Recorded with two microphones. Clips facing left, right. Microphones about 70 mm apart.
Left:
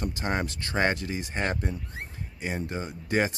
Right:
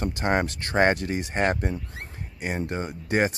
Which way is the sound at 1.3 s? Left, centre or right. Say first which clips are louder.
Right 6 dB; right.